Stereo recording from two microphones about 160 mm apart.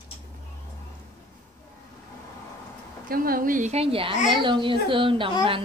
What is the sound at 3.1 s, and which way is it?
A woman's voice, 65° right (ahead or behind).